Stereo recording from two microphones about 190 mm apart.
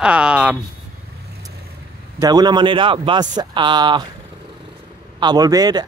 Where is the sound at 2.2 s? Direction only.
20° right (ahead or behind).